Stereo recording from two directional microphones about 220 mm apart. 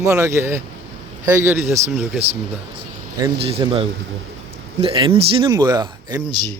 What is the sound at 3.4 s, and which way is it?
Speech, 25° right (ahead or behind).